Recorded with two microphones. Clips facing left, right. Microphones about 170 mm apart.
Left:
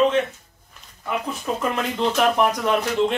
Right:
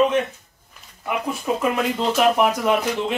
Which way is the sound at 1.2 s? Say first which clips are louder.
Right 5 dB; 10° right (ahead or behind).